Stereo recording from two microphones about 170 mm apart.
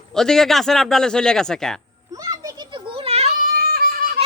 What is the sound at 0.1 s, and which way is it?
A man's voice, 5° left (ahead or behind).